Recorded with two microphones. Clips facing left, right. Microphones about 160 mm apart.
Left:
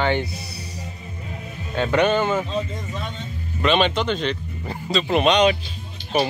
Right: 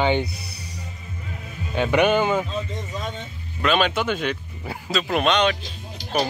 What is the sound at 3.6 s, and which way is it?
Speech, 5° right (ahead or behind).